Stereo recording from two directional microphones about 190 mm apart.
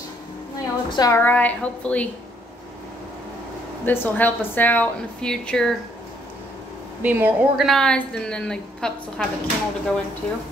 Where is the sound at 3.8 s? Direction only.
10° left (ahead or behind).